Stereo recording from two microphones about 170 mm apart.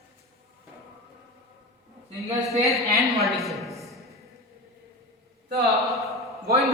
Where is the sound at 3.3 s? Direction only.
Centre (ahead or behind).